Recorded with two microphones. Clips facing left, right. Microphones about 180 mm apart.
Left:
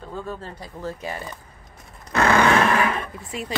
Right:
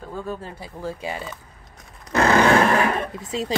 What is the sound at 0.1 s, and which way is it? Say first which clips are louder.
Speech: right 2 dB; 10° right (ahead or behind).